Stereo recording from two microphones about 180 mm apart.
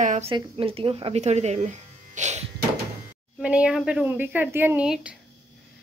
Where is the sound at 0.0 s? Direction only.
40° right (ahead or behind).